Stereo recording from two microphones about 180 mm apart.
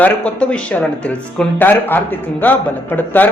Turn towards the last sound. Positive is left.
turn(degrees=10)  # may be behind; listen again after turning